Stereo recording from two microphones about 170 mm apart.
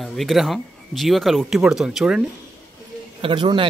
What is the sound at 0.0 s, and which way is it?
Speech, centre (ahead or behind).